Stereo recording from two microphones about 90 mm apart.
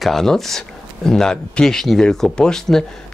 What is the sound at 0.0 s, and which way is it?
Speech, 5° left (ahead or behind).